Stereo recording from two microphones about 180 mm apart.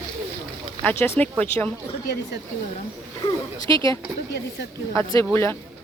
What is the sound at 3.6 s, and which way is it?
Speech, 20° left (ahead or behind).